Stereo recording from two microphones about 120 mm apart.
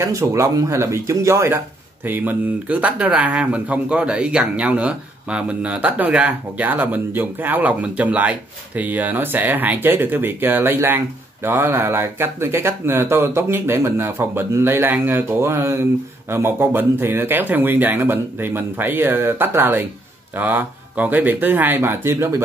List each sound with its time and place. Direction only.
0.0 s speech: 25° right (ahead or behind)